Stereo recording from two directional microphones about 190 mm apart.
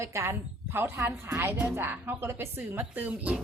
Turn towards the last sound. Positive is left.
turn(degrees=-10)  # may be behind; listen again after turning